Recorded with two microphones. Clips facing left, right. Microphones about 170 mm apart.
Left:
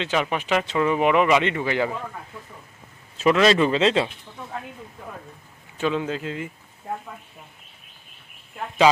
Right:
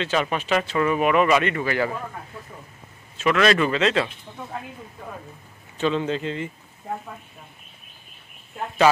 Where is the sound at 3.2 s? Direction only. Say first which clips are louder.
Left 2 dB; 25° left (ahead or behind).